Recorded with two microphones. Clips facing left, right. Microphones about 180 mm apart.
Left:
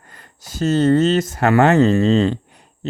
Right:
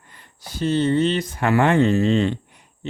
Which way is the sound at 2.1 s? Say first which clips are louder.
Left 4 dB; 40° left (ahead or behind).